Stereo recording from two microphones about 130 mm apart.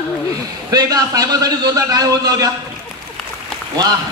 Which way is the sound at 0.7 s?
30° right (ahead or behind).